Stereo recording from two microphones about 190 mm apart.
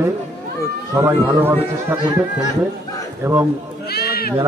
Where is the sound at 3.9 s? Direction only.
55° left (ahead or behind).